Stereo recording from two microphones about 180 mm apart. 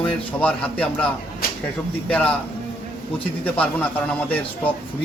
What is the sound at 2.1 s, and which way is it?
Speech, 5° left (ahead or behind).